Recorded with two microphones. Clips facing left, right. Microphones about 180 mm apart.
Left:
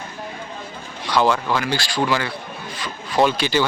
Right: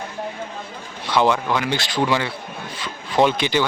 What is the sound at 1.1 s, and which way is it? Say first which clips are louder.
Speech: even; 20° right (ahead or behind).